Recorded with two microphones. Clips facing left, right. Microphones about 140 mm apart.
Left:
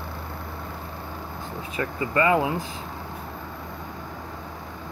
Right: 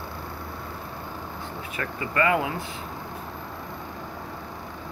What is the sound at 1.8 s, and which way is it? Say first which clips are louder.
Speech: left 2 dB; 25° left (ahead or behind).